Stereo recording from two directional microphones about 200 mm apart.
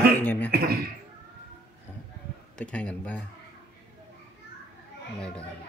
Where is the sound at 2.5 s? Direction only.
5° left (ahead or behind).